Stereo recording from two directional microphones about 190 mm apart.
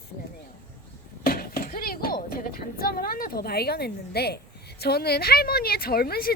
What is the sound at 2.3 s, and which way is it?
A woman's voice, 50° left (ahead or behind).